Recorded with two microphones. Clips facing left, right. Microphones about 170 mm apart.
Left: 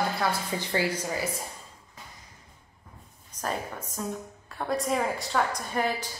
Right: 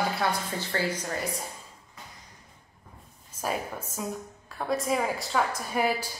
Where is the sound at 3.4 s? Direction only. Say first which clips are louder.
Right 1 dB; 10° right (ahead or behind).